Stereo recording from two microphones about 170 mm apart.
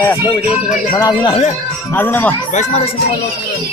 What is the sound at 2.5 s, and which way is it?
Speech, 40° left (ahead or behind).